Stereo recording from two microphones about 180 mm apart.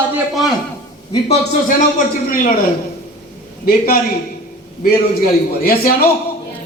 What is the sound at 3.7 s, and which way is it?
A man's voice, 55° left (ahead or behind).